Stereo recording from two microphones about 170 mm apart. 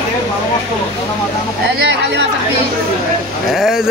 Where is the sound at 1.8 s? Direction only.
90° right.